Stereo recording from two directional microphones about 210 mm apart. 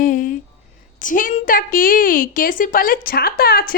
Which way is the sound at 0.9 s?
40° left (ahead or behind).